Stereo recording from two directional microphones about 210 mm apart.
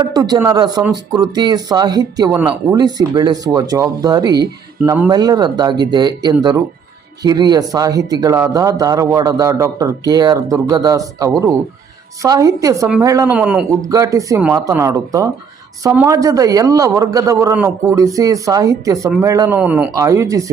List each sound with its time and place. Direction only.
0.0 s speech: 20° right (ahead or behind)
4.8 s speech: 5° right (ahead or behind)
5.0 s speech: 20° right (ahead or behind)
13.8 s speech: 15° right (ahead or behind)